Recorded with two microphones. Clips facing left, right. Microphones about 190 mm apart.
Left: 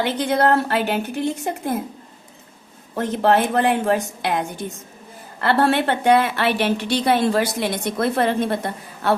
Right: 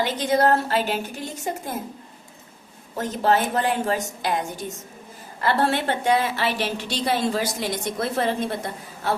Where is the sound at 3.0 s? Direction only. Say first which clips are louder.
Left 4 dB; 60° left (ahead or behind).